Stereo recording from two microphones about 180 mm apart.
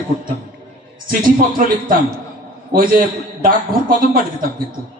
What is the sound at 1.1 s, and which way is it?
Speech, 50° right (ahead or behind).